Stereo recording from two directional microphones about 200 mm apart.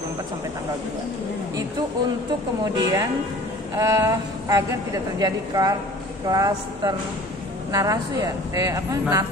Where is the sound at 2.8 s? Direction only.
15° right (ahead or behind).